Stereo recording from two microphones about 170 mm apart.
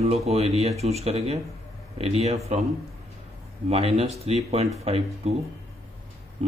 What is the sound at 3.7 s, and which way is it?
Speech, 35° right (ahead or behind).